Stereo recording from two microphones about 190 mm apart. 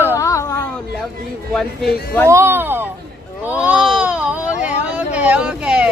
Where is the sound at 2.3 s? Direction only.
10° right (ahead or behind).